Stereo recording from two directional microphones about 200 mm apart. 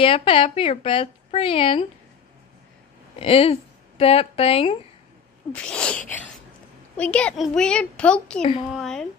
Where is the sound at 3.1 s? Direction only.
30° left (ahead or behind).